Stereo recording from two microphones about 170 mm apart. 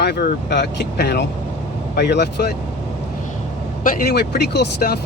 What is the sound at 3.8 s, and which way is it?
Speech, 60° left (ahead or behind).